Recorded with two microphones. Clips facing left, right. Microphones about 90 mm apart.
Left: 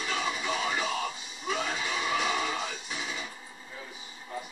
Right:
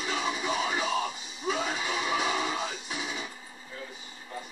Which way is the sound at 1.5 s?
15° right (ahead or behind).